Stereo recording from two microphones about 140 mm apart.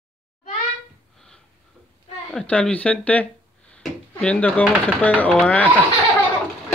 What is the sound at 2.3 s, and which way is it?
Speech, 5° left (ahead or behind).